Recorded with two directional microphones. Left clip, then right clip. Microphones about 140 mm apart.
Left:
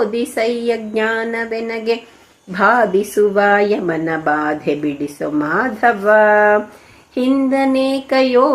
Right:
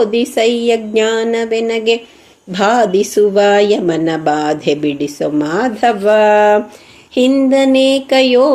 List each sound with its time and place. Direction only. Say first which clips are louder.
0.0 s speech: right 5 dB; 30° right (ahead or behind)